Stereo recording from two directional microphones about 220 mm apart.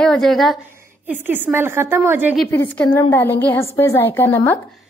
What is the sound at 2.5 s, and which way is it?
A woman's voice, 5° left (ahead or behind).